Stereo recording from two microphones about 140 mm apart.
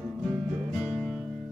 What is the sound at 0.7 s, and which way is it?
Music, centre (ahead or behind).